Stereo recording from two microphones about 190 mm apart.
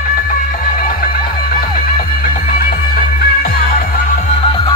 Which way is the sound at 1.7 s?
45° left (ahead or behind).